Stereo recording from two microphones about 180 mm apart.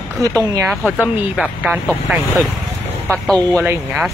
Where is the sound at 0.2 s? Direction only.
20° right (ahead or behind).